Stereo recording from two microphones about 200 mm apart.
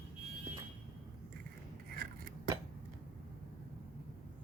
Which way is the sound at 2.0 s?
50° right (ahead or behind).